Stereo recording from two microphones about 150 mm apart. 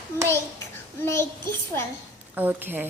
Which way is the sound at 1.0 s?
15° left (ahead or behind).